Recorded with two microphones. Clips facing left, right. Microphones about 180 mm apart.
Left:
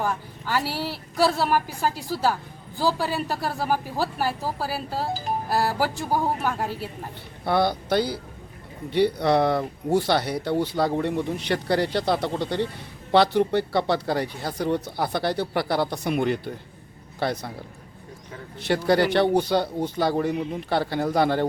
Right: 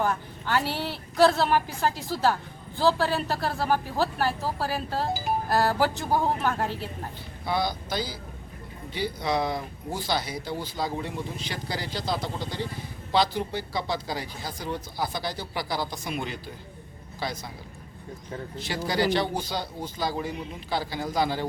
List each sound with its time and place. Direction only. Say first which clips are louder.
0.0 s a woman's voice: even; 10° left (ahead or behind)
7.4 s speech: left 6 dB; 60° left (ahead or behind)
18.9 s speech: left 5 dB; 60° left (ahead or behind)